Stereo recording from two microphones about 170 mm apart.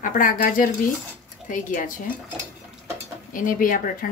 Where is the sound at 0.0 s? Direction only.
50° left (ahead or behind).